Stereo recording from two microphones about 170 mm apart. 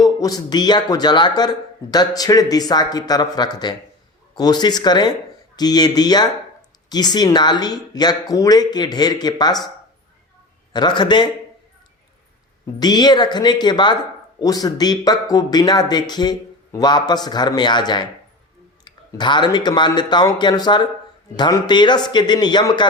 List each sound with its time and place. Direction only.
0.0 s speech: 20° left (ahead or behind)
10.7 s speech: 25° left (ahead or behind)
12.8 s speech: 25° left (ahead or behind)